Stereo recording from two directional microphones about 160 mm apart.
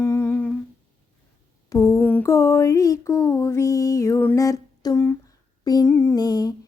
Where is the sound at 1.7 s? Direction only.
20° left (ahead or behind).